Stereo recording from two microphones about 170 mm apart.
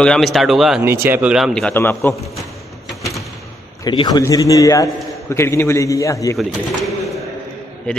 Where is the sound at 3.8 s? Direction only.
25° left (ahead or behind).